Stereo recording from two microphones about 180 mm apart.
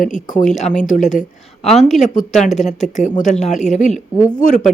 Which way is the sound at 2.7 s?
40° left (ahead or behind).